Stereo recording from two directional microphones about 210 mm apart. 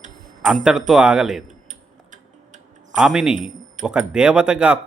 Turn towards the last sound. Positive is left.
turn(degrees=-5)  # may be behind; listen again after turning